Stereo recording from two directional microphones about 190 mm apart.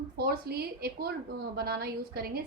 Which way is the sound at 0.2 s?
55° right (ahead or behind).